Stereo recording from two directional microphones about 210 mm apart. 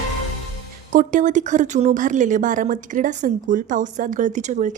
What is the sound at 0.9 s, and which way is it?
A woman's voice, 40° right (ahead or behind).